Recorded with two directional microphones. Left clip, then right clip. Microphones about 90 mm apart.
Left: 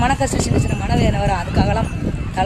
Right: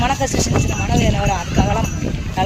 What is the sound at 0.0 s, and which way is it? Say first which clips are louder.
Speech: even; 30° left (ahead or behind).